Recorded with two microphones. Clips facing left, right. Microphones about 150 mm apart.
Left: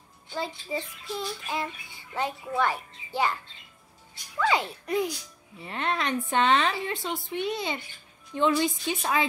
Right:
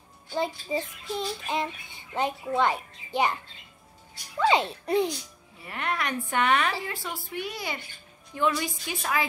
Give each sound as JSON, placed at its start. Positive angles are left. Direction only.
{"t": 0.7, "sound": "speech", "side_deg": -20}
{"t": 4.4, "sound": "speech", "side_deg": -25}
{"t": 5.6, "sound": "a woman's voice", "side_deg": 25}